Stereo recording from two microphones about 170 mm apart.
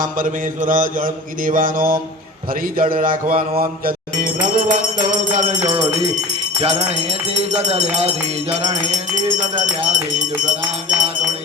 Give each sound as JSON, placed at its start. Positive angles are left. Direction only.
{"t": 0.0, "sound": "mantra", "side_deg": -50}
{"t": 2.5, "sound": "a man's voice", "side_deg": -55}
{"t": 3.6, "sound": "music", "side_deg": -55}